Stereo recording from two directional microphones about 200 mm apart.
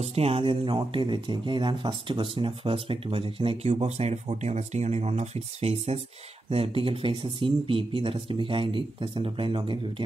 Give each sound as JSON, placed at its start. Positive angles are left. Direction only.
{"t": 0.0, "sound": "speech", "side_deg": -30}